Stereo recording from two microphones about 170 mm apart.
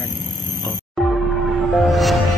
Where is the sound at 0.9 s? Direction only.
Centre (ahead or behind).